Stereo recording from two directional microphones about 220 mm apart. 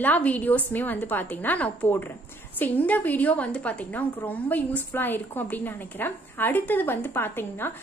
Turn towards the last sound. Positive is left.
turn(degrees=10)  # may be behind; listen again after turning